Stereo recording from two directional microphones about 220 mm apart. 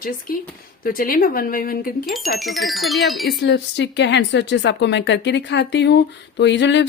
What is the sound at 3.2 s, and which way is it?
Speech, 50° left (ahead or behind).